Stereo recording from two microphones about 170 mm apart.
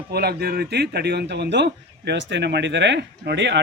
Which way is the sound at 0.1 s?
70° right (ahead or behind).